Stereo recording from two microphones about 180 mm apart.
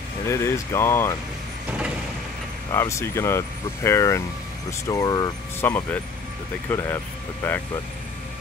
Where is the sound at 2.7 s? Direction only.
15° left (ahead or behind).